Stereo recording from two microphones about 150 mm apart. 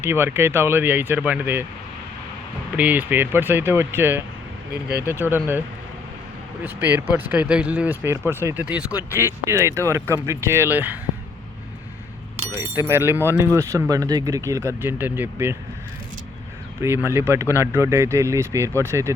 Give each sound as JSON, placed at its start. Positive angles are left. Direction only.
{"t": 0.0, "sound": "speech", "side_deg": -15}
{"t": 2.7, "sound": "speech", "side_deg": -10}
{"t": 6.7, "sound": "speech", "side_deg": -15}
{"t": 12.7, "sound": "speech", "side_deg": -15}
{"t": 17.1, "sound": "speech", "side_deg": -15}